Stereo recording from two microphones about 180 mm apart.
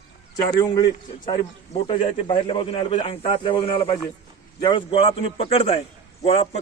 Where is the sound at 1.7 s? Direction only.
30° left (ahead or behind).